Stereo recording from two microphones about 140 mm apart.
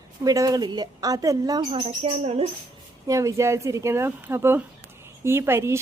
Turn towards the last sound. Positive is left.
turn(degrees=-20)  # may be behind; listen again after turning